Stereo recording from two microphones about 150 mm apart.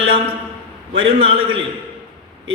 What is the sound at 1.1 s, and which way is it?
Speech, 40° right (ahead or behind).